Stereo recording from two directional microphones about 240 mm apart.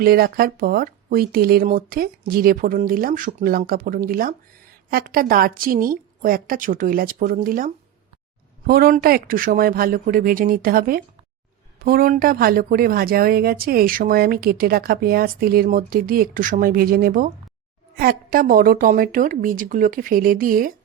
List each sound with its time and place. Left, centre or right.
0.0 s speech: right